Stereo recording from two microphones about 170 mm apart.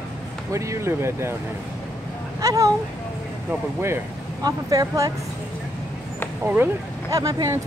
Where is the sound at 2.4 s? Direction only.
20° right (ahead or behind).